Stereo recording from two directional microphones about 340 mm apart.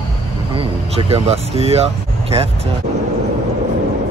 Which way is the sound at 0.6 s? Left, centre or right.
Centre.